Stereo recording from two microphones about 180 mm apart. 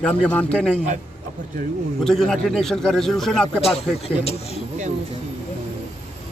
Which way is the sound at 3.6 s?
35° left (ahead or behind).